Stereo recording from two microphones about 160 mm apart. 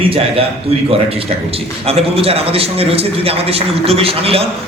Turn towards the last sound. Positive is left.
turn(degrees=-35)  # may be behind; listen again after turning